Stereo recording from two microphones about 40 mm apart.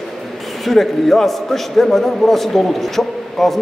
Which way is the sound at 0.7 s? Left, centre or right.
Centre.